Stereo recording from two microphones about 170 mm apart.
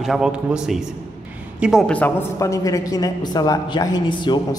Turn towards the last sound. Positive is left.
turn(degrees=25)  # may be behind; listen again after turning